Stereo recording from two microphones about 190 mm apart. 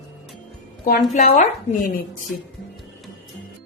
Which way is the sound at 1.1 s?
35° left (ahead or behind).